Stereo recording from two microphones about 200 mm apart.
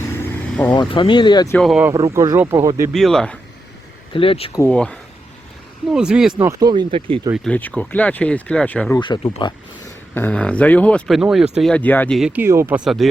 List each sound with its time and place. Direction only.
0.0 s vehicle: 10° left (ahead or behind)
0.7 s speech: 25° left (ahead or behind)
1.5 s speech: centre (ahead or behind)
1.9 s speech: 15° right (ahead or behind)
2.9 s speech: centre (ahead or behind)
4.1 s speech: 25° left (ahead or behind)
4.5 s speech: 10° left (ahead or behind)
6.5 s speech: 20° right (ahead or behind)
7.3 s speech: 5° left (ahead or behind)
9.0 s speech: 25° left (ahead or behind)
10.2 s speech: 5° left (ahead or behind)
12.3 s speech: 10° right (ahead or behind)